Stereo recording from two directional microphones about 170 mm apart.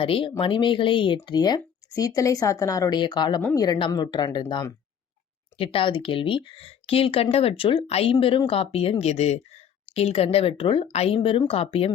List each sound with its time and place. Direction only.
0.0 s speech: 30° left (ahead or behind)